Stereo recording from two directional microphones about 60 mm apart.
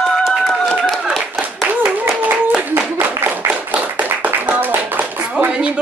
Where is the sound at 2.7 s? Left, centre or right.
Right.